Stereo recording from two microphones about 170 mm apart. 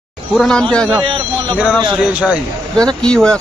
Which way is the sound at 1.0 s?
30° right (ahead or behind).